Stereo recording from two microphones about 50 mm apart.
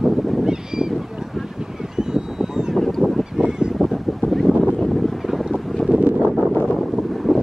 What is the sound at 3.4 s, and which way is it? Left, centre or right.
Goose, centre.